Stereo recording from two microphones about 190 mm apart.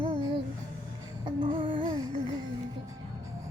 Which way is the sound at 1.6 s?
20° right (ahead or behind).